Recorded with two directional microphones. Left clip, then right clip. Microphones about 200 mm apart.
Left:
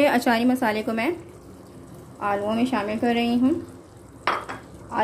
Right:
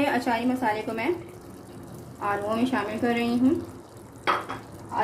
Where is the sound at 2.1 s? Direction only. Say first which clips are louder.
Left 3 dB; 30° left (ahead or behind).